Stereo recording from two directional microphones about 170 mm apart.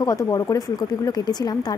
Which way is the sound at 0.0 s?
20° left (ahead or behind).